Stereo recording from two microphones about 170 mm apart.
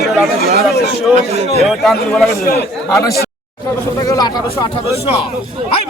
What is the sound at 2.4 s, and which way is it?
Speech, 65° left (ahead or behind).